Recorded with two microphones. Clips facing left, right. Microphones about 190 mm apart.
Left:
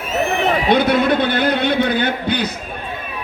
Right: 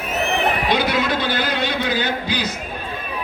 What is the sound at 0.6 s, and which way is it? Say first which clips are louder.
A man's voice: left 5 dB; 55° left (ahead or behind).